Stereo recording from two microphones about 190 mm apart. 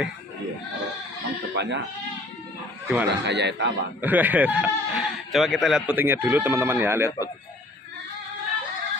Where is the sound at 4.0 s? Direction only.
10° right (ahead or behind).